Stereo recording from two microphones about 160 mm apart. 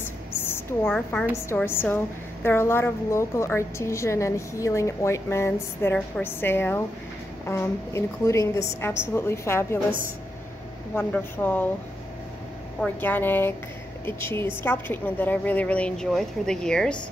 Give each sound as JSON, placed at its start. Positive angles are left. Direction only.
{"t": 0.0, "sound": "a sound", "side_deg": 15}
{"t": 1.3, "sound": "a woman's voice", "side_deg": 15}
{"t": 11.0, "sound": "a woman's voice", "side_deg": 10}
{"t": 12.8, "sound": "a woman's voice", "side_deg": 10}